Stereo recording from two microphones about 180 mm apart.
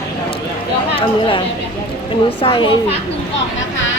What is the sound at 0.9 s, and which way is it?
A child's voice, 30° left (ahead or behind).